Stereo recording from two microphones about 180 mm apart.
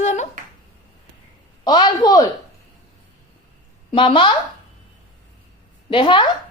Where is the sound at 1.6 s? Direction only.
25° left (ahead or behind).